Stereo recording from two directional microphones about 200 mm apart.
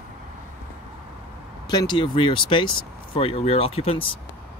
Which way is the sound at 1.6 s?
20° left (ahead or behind).